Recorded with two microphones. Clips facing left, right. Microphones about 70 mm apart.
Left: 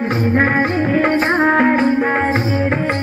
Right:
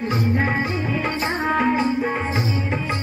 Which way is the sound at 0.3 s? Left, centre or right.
Left.